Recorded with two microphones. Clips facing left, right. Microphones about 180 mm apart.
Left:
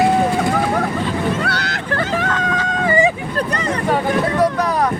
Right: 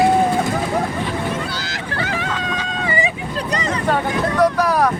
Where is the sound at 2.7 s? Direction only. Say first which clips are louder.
Left 7 dB; 45° left (ahead or behind).